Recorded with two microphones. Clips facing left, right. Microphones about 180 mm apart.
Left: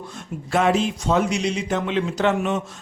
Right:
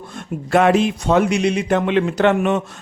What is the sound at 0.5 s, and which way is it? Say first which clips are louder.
A man's voice: right 5 dB; 60° right (ahead or behind).